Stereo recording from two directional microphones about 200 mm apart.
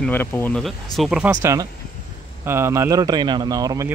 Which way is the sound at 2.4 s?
15° right (ahead or behind).